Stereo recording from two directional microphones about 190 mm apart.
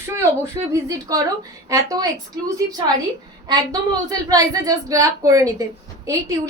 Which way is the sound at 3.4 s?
20° right (ahead or behind).